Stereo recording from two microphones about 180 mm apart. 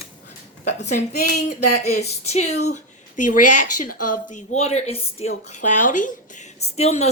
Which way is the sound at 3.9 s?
40° left (ahead or behind).